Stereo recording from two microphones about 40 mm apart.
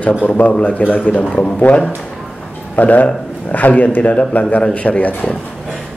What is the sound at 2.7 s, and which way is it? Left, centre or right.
A man's voice, left.